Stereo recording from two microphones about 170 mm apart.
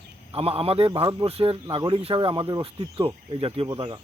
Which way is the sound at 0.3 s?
35° right (ahead or behind).